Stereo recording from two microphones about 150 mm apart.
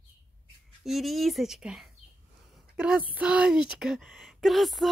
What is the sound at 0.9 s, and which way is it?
Speech, centre (ahead or behind).